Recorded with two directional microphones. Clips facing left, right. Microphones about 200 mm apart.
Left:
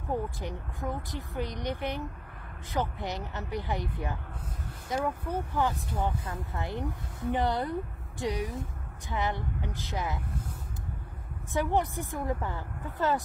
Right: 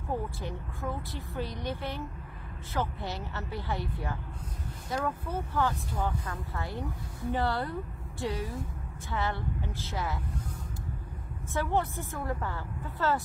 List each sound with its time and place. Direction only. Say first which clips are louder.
0.1 s speech: left 2 dB; 15° left (ahead or behind)
11.5 s speech: left 2 dB; 15° left (ahead or behind)